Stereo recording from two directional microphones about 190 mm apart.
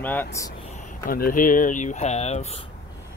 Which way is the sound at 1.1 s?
50° left (ahead or behind).